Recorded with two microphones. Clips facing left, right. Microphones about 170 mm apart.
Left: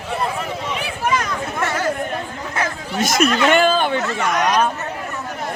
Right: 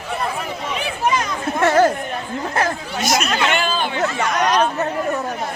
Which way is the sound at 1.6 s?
60° right (ahead or behind).